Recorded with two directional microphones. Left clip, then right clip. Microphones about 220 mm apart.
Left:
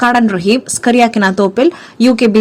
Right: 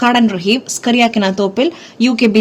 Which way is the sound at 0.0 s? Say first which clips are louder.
Left 2 dB; 20° left (ahead or behind).